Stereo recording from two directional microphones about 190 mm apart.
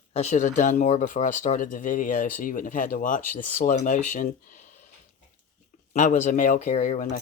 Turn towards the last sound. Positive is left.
turn(degrees=40)  # may be behind; listen again after turning